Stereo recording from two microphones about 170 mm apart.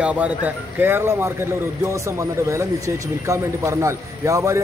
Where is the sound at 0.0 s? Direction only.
10° right (ahead or behind).